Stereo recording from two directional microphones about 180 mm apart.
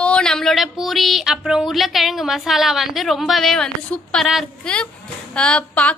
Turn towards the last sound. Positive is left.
turn(degrees=10)  # may be behind; listen again after turning